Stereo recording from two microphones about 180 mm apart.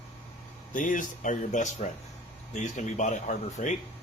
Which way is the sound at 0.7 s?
45° left (ahead or behind).